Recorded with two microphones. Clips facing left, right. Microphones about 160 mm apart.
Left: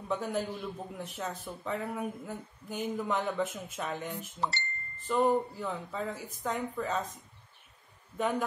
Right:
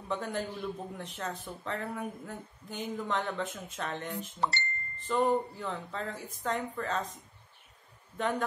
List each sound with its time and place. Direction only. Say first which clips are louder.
0.1 s a man's voice: left 2 dB; 5° left (ahead or behind)
4.4 s speech: right 2 dB; 60° right (ahead or behind)
5.0 s a man's voice: left 1 dB; 5° left (ahead or behind)
8.2 s a man's voice: left 1 dB; 10° left (ahead or behind)